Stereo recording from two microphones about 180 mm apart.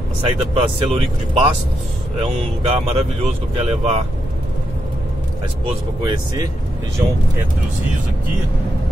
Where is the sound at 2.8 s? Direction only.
35° right (ahead or behind).